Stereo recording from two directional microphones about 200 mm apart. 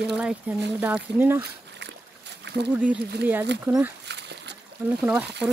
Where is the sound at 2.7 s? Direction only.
5° right (ahead or behind).